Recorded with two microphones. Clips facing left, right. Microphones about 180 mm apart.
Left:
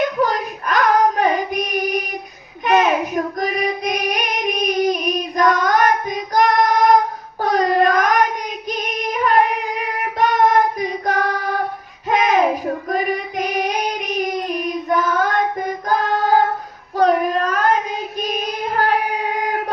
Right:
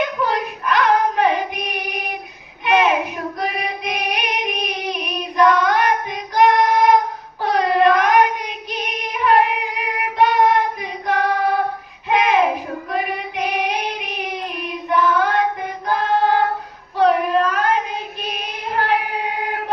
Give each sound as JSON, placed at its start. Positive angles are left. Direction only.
{"t": 0.2, "sound": "child singing", "side_deg": 40}
{"t": 2.6, "sound": "a sound", "side_deg": 45}
{"t": 3.4, "sound": "female singing", "side_deg": 40}
{"t": 7.4, "sound": "child singing", "side_deg": 40}
{"t": 8.7, "sound": "female singing", "side_deg": 45}
{"t": 12.0, "sound": "a sound", "side_deg": 40}
{"t": 12.9, "sound": "child singing", "side_deg": 40}